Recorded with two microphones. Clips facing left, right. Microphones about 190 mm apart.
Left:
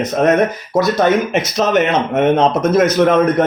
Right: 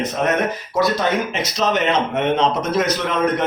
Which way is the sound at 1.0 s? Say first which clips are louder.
Left 7 dB; 50° left (ahead or behind).